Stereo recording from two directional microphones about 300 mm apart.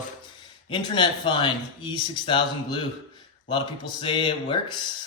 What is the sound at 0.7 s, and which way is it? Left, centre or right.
Speech, centre.